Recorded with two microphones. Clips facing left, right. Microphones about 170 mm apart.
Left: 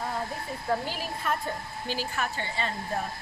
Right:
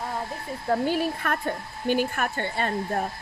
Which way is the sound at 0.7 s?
55° right (ahead or behind).